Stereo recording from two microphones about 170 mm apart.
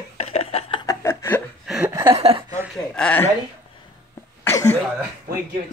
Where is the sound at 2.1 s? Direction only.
35° right (ahead or behind).